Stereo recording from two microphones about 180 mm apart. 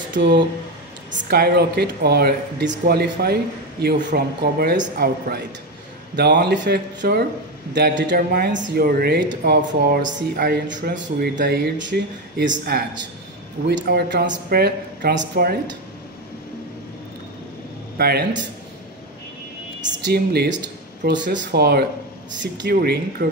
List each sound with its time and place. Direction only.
0.1 s speech: 75° right (ahead or behind)
7.7 s speech: 75° right (ahead or behind)
17.9 s speech: 60° right (ahead or behind)
19.8 s speech: 65° right (ahead or behind)
21.0 s speech: 75° right (ahead or behind)
21.5 s speech: 60° right (ahead or behind)